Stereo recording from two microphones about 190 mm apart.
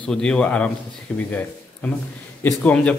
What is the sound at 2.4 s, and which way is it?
Speech, 10° left (ahead or behind).